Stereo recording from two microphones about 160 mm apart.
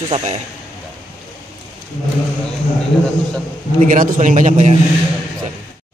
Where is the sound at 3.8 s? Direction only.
55° right (ahead or behind).